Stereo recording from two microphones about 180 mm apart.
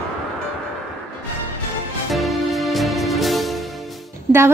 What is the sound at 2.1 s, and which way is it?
Music, centre (ahead or behind).